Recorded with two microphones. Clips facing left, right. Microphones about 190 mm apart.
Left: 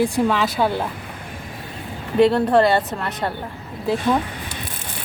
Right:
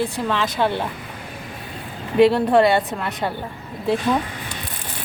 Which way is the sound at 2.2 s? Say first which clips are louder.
Right 1 dB; centre (ahead or behind).